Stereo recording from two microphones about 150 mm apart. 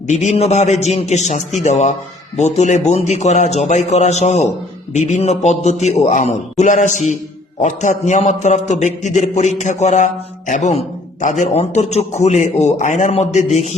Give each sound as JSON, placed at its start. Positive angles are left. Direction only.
{"t": 0.1, "sound": "a man's voice", "side_deg": 50}